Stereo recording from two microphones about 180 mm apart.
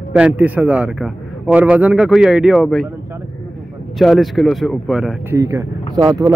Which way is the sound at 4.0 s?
Centre (ahead or behind).